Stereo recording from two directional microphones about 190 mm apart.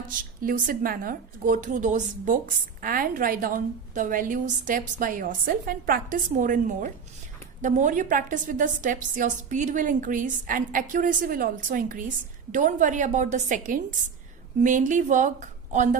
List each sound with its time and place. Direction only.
0.4 s a woman's voice: 50° right (ahead or behind)